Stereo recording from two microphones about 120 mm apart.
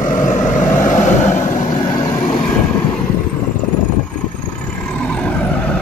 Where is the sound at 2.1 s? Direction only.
15° left (ahead or behind).